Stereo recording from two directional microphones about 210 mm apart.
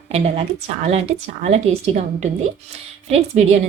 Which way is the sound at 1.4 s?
30° right (ahead or behind).